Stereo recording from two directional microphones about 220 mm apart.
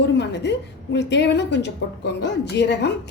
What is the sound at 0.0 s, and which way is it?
A woman's voice, 50° left (ahead or behind).